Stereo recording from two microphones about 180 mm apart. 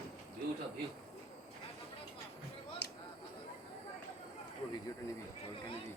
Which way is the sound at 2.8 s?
65° left (ahead or behind).